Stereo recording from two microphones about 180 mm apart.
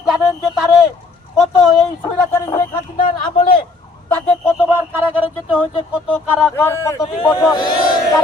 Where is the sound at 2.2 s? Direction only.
15° left (ahead or behind).